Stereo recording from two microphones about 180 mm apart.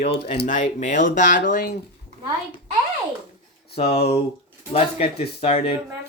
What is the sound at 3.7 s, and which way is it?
Speech, 35° left (ahead or behind).